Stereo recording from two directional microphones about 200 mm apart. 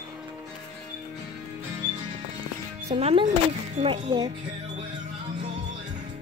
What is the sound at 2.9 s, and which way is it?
Speech, 25° right (ahead or behind).